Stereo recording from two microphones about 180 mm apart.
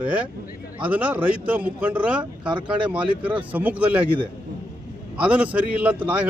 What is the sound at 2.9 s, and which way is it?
A man's voice, 10° right (ahead or behind).